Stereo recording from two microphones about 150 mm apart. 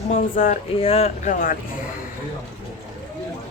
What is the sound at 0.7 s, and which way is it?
Speech, 40° left (ahead or behind).